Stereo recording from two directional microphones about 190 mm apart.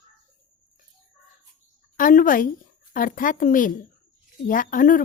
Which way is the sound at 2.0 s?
45° left (ahead or behind).